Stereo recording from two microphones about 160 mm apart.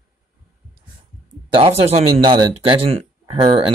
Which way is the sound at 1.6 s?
35° right (ahead or behind).